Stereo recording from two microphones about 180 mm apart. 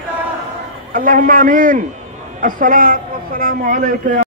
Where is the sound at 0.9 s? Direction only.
50° right (ahead or behind).